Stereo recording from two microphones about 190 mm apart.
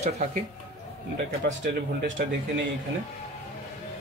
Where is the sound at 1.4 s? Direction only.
60° right (ahead or behind).